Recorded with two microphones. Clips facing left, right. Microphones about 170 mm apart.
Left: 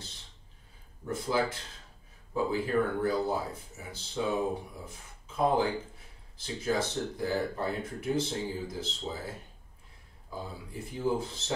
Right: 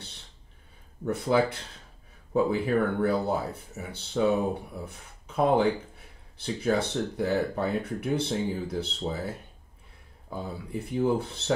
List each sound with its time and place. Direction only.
1.0 s speech: 65° right (ahead or behind)
10.3 s speech: 65° right (ahead or behind)